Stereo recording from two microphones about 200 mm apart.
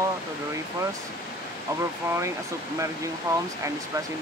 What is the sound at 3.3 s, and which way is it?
Speech, 15° right (ahead or behind).